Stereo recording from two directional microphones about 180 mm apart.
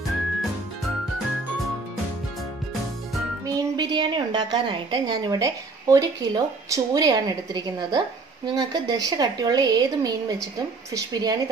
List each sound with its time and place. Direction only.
3.4 s a woman's voice: 25° right (ahead or behind)